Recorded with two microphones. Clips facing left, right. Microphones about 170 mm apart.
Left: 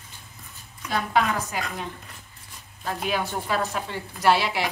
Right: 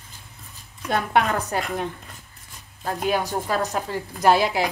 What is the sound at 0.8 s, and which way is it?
Speech, 60° right (ahead or behind).